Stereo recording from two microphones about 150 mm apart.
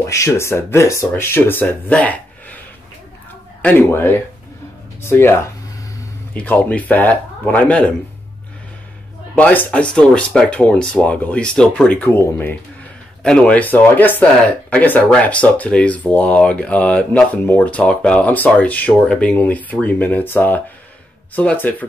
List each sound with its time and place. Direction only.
0.0 s speech: 20° left (ahead or behind)
3.6 s speech: 15° left (ahead or behind)
9.3 s speech: 10° left (ahead or behind)